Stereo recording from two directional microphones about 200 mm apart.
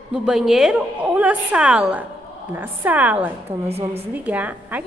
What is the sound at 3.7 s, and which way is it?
Speech, 30° right (ahead or behind).